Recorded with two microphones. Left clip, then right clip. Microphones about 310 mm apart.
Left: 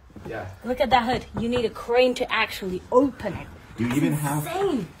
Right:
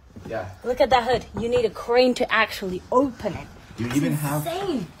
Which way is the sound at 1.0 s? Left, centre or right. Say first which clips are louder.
Right 3 dB; right.